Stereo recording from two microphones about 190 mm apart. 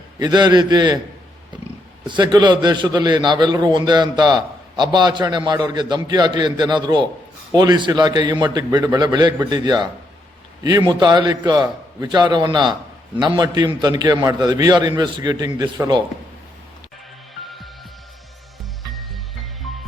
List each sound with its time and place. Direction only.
0.2 s a man's voice: 20° right (ahead or behind)
2.0 s a man's voice: 25° right (ahead or behind)
18.8 s music: centre (ahead or behind)